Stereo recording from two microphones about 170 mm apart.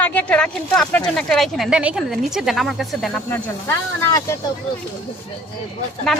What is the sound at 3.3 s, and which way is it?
Speech, 15° left (ahead or behind).